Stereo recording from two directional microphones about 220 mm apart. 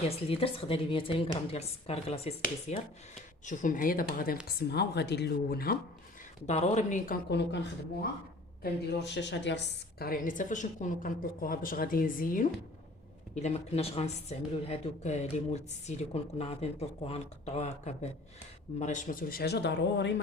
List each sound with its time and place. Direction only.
0.3 s a woman's voice: 25° left (ahead or behind); by 5.7 s 45° left (ahead or behind)
6.5 s a woman's voice: 30° left (ahead or behind); by 7.6 s 50° left (ahead or behind)
8.6 s a woman's voice: 50° left (ahead or behind)